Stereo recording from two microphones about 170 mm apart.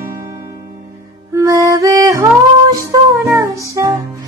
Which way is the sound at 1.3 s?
15° right (ahead or behind).